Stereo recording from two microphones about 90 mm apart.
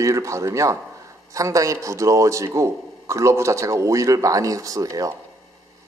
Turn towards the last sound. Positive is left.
turn(degrees=-40)  # may be behind; listen again after turning